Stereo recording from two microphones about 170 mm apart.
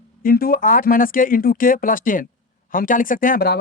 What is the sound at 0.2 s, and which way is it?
Speech, 60° left (ahead or behind).